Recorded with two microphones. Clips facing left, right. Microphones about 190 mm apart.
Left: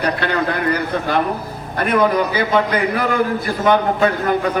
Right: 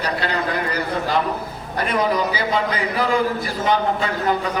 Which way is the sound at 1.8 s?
55° left (ahead or behind).